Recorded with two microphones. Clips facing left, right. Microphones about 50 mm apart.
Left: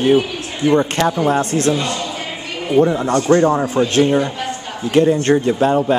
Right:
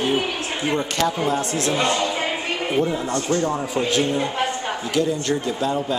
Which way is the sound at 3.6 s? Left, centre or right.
Left.